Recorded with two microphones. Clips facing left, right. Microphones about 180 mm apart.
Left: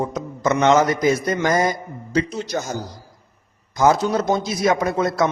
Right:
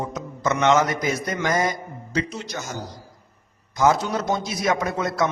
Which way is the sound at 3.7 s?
35° left (ahead or behind).